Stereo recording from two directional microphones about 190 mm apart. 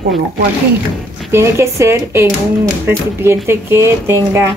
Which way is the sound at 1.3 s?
15° right (ahead or behind).